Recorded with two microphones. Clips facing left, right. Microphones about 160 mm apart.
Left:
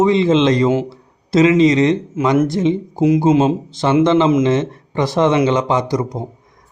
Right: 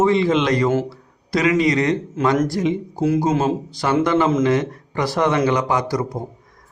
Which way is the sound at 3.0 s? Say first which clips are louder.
Left 6 dB; 15° left (ahead or behind).